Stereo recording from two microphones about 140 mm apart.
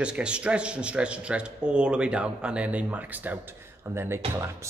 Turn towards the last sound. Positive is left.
turn(degrees=-15)  # may be behind; listen again after turning